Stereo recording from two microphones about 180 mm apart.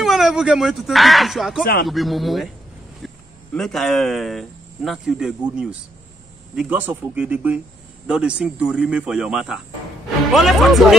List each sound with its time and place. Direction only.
0.0 s speech: centre (ahead or behind)
1.6 s speech: 55° left (ahead or behind)
1.9 s speech: centre (ahead or behind)
3.0 s a sound: centre (ahead or behind)
3.5 s speech: centre (ahead or behind)